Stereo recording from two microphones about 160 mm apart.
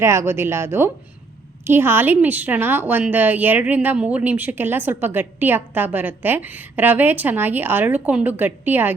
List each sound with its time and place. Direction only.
0.0 s a woman's voice: 15° right (ahead or behind)